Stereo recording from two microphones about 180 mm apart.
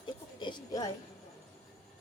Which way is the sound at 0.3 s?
25° left (ahead or behind).